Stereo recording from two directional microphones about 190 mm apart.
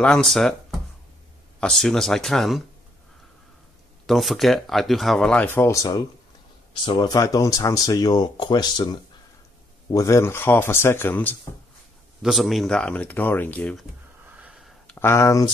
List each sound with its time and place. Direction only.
0.0 s speech: 5° left (ahead or behind)
4.0 s speech: centre (ahead or behind)
12.2 s speech: centre (ahead or behind)
14.4 s a sound: centre (ahead or behind)
15.0 s speech: 15° left (ahead or behind)